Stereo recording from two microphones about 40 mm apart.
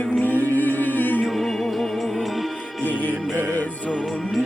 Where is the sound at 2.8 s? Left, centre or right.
Left.